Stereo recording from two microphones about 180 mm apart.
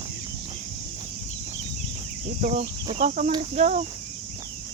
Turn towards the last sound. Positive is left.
turn(degrees=-40)  # may be behind; listen again after turning